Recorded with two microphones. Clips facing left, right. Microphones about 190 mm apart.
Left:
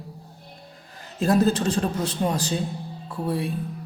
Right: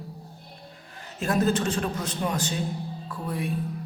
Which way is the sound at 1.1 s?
35° left (ahead or behind).